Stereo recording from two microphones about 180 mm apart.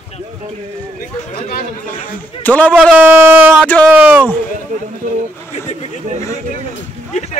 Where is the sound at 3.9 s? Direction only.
10° right (ahead or behind).